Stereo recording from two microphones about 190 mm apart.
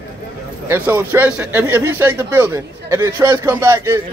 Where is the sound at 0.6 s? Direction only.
10° right (ahead or behind).